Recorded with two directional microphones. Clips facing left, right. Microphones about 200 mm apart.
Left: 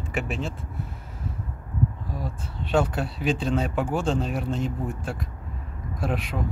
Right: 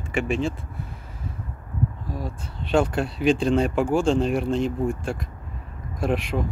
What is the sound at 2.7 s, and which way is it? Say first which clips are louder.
Speech: right 2 dB; 5° left (ahead or behind).